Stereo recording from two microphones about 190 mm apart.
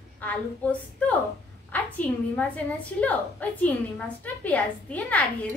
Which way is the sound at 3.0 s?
10° left (ahead or behind).